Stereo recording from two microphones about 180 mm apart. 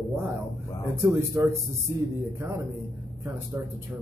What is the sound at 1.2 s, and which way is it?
Speech, 15° right (ahead or behind).